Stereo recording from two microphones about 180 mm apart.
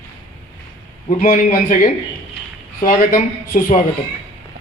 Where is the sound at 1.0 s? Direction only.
45° left (ahead or behind).